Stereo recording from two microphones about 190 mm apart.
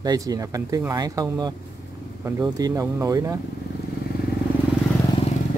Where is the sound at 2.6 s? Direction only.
15° right (ahead or behind).